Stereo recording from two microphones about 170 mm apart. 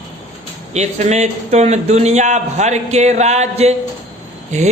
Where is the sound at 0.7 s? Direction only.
40° right (ahead or behind).